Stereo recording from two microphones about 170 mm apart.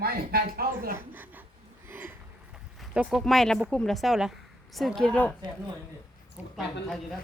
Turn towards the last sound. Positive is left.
turn(degrees=-10)  # may be behind; listen again after turning